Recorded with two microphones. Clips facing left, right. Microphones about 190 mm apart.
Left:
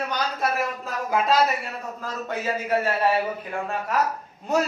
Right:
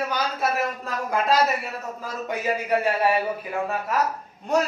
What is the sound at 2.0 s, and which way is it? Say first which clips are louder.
A man's voice: right 1 dB; 15° right (ahead or behind).